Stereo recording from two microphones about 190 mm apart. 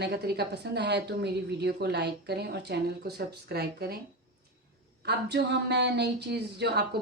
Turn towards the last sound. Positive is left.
turn(degrees=-60)  # may be behind; listen again after turning